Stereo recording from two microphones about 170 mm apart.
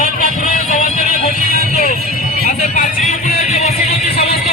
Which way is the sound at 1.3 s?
55° right (ahead or behind).